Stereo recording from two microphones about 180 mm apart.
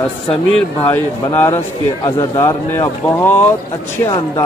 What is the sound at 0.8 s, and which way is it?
Speech, 10° left (ahead or behind).